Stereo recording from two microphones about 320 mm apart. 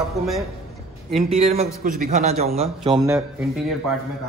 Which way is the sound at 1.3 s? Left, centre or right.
Centre.